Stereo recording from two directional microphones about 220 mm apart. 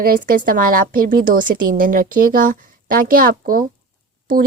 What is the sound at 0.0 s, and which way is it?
Speech, 40° right (ahead or behind).